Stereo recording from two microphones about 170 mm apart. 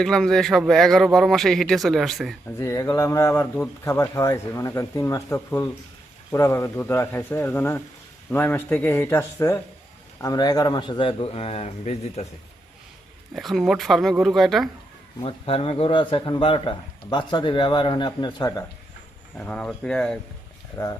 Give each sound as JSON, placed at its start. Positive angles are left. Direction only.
{"t": 0.0, "sound": "a man's voice", "side_deg": 5}
{"t": 2.6, "sound": "a man's voice", "side_deg": 20}
{"t": 13.3, "sound": "a man's voice", "side_deg": 0}
{"t": 15.2, "sound": "a man's voice", "side_deg": 30}
{"t": 19.4, "sound": "a man's voice", "side_deg": 5}
{"t": 20.8, "sound": "a man's voice", "side_deg": 20}